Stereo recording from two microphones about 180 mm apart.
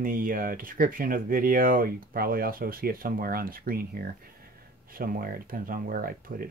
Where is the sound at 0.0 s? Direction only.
50° right (ahead or behind).